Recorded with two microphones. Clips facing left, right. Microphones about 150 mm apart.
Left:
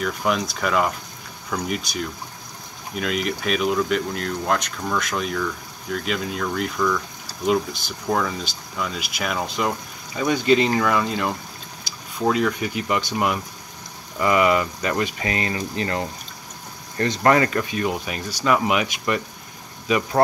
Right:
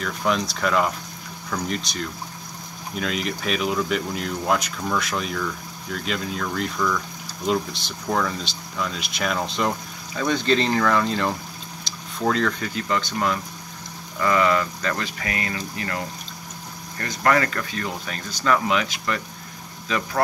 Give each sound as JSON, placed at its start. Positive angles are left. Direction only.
{"t": 0.0, "sound": "speech", "side_deg": 5}
{"t": 17.0, "sound": "speech", "side_deg": 25}